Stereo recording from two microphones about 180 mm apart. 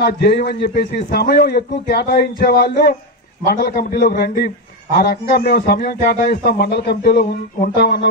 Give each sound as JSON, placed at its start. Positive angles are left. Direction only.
{"t": 0.0, "sound": "a man's voice", "side_deg": 60}